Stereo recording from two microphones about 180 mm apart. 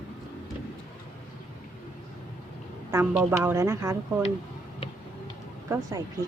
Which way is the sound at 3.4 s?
15° right (ahead or behind).